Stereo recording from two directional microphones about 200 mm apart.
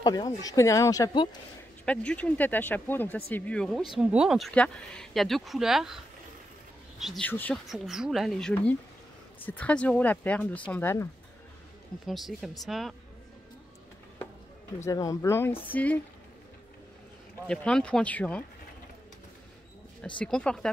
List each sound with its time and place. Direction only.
0.0 s speech: 20° left (ahead or behind)
1.9 s speech: 5° left (ahead or behind)
7.0 s speech: centre (ahead or behind)
12.1 s speech: centre (ahead or behind)
14.9 s speech: 15° left (ahead or behind)
17.5 s speech: 5° left (ahead or behind)
20.2 s speech: 5° left (ahead or behind)